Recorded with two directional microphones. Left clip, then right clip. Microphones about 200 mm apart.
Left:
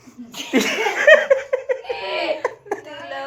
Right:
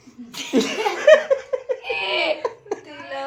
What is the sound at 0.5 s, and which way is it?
Speech, centre (ahead or behind).